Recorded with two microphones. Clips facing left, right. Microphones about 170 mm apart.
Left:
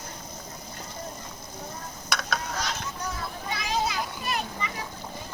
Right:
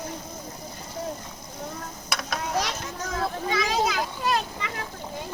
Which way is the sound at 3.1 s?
90° right.